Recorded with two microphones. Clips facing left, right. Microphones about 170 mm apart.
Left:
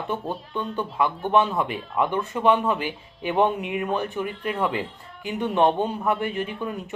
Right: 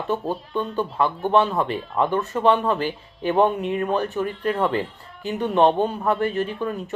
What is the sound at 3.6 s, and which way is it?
Speech, 15° left (ahead or behind).